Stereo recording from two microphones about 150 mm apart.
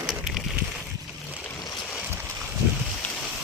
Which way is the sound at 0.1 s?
5° right (ahead or behind).